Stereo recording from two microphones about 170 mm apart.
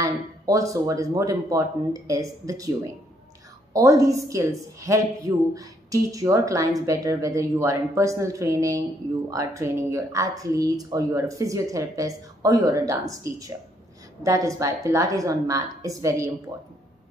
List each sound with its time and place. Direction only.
0.0 s a woman's voice: 20° right (ahead or behind)